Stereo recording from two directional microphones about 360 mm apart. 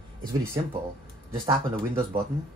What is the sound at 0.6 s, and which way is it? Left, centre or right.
Speech, centre.